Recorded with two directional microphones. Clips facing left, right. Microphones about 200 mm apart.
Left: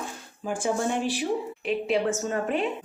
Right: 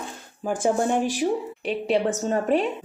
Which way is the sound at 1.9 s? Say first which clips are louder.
Right 4 dB; 35° right (ahead or behind).